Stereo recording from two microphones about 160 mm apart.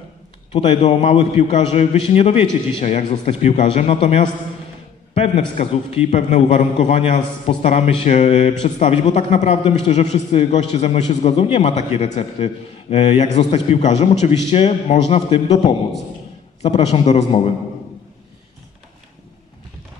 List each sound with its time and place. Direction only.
0.5 s a man's voice: 35° left (ahead or behind)